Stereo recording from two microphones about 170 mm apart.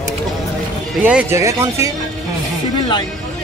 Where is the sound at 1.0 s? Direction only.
10° right (ahead or behind).